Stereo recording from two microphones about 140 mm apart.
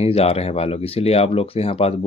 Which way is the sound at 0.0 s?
45° left (ahead or behind).